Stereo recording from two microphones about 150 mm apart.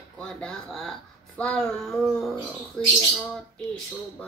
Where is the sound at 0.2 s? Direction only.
5° left (ahead or behind).